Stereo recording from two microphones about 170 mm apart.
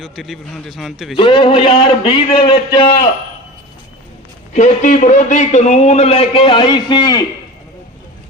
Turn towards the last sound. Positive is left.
turn(degrees=25)  # may be behind; listen again after turning